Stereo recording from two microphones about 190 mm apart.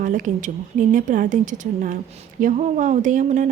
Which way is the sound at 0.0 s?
45° right (ahead or behind).